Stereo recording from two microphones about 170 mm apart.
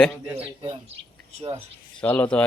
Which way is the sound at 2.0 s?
10° left (ahead or behind).